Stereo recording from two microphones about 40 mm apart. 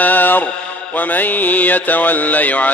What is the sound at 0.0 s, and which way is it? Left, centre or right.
Mantra, left.